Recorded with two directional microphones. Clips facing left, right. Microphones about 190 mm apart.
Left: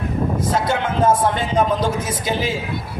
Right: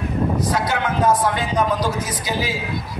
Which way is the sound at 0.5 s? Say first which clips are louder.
Left 1 dB; 25° left (ahead or behind).